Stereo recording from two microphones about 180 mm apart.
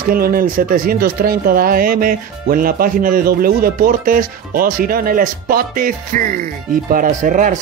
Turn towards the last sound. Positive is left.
turn(degrees=-45)  # may be behind; listen again after turning